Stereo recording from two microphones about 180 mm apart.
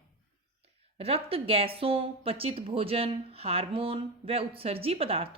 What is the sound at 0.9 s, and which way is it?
Speech, 35° right (ahead or behind).